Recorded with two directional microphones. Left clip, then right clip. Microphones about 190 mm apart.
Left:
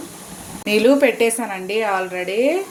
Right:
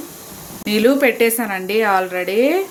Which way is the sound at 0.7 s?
10° right (ahead or behind).